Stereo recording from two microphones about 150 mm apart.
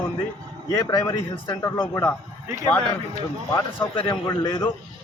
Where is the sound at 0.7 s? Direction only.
25° left (ahead or behind).